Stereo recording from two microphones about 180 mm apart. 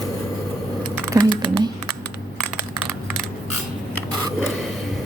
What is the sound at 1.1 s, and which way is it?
Speech, 25° right (ahead or behind).